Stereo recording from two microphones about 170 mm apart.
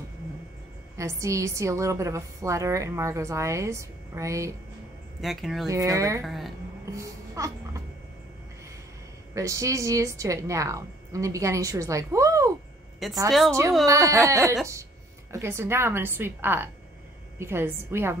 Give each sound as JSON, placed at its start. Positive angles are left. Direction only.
{"t": 0.9, "sound": "a woman's voice", "side_deg": -20}
{"t": 5.2, "sound": "speech", "side_deg": 0}
{"t": 5.7, "sound": "speech", "side_deg": -20}
{"t": 6.2, "sound": "speech", "side_deg": 0}
{"t": 6.9, "sound": "music", "side_deg": -20}
{"t": 9.3, "sound": "a woman's voice", "side_deg": -20}
{"t": 13.0, "sound": "speech", "side_deg": 0}
{"t": 13.5, "sound": "a woman's voice", "side_deg": -20}